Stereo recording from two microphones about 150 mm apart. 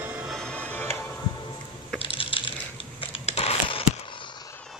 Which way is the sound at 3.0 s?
40° left (ahead or behind).